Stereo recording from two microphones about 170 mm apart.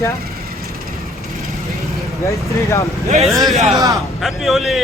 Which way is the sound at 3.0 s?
40° right (ahead or behind).